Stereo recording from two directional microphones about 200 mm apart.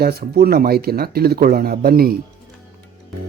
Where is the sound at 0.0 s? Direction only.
50° right (ahead or behind).